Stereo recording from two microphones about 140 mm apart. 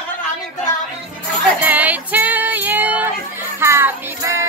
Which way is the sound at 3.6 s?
20° right (ahead or behind).